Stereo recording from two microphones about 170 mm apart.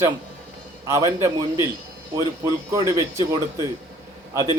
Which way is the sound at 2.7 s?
20° right (ahead or behind).